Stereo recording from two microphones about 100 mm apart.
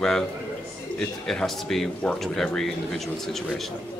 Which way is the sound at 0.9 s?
5° left (ahead or behind).